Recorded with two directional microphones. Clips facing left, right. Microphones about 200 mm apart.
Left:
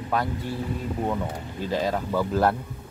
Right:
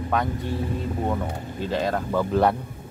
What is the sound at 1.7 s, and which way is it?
Speech, 5° left (ahead or behind).